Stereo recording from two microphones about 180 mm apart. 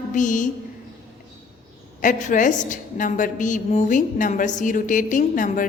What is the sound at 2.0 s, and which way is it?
A woman's voice, 45° left (ahead or behind).